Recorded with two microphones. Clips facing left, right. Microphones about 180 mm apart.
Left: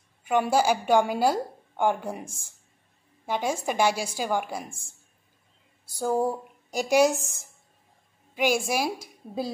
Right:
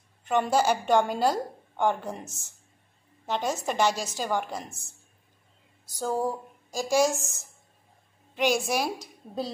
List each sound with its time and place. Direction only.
0.2 s a woman's voice: 10° left (ahead or behind)
4.6 s speech: 30° left (ahead or behind)
5.9 s a sound: 15° left (ahead or behind)
8.4 s a woman's voice: 10° left (ahead or behind)